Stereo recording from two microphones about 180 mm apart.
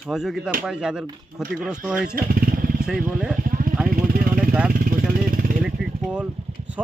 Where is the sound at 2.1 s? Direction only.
55° right (ahead or behind).